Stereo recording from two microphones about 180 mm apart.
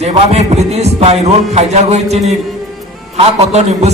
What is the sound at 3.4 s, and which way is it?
Speech, 40° right (ahead or behind).